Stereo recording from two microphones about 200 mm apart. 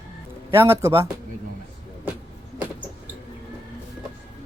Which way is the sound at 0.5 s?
15° right (ahead or behind).